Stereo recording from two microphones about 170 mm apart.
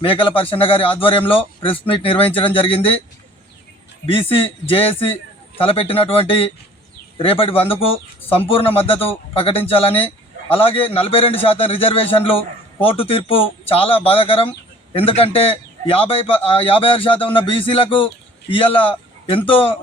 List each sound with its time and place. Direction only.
0.0 s a man's voice: 30° left (ahead or behind)
4.0 s a man's voice: 30° left (ahead or behind)